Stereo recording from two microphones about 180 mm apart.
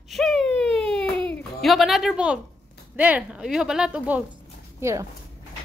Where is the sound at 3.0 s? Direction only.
10° right (ahead or behind).